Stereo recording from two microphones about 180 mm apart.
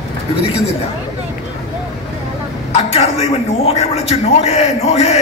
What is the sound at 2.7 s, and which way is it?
A man's voice, 35° left (ahead or behind).